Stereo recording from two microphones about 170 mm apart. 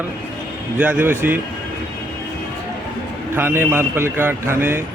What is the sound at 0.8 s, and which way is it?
Speech, 10° right (ahead or behind).